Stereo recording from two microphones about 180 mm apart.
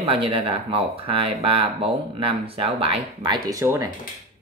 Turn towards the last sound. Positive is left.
turn(degrees=-20)  # may be behind; listen again after turning